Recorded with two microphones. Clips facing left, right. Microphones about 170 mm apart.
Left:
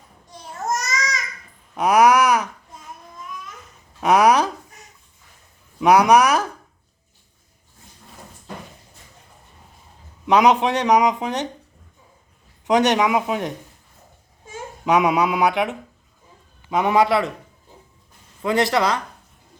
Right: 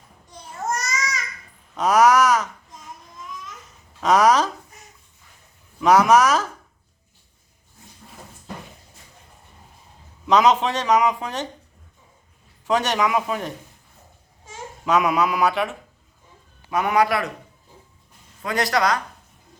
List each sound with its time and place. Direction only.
0.8 s babbling: 20° left (ahead or behind)
4.0 s a sound: 10° left (ahead or behind)
5.8 s speech: 15° left (ahead or behind)
10.2 s speech: 15° left (ahead or behind)
12.6 s speech: 15° left (ahead or behind)
14.8 s a man's voice: 15° left (ahead or behind)
18.4 s a man's voice: 25° left (ahead or behind)